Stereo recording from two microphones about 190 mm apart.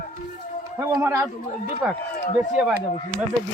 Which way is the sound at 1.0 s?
10° right (ahead or behind).